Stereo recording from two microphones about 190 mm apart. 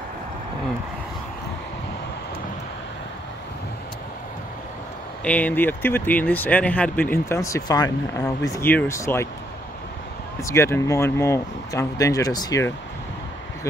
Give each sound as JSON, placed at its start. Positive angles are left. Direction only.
{"t": 5.2, "sound": "speech", "side_deg": 10}
{"t": 10.4, "sound": "speech", "side_deg": 15}